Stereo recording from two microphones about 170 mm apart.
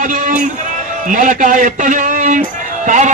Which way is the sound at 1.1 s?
50° right (ahead or behind).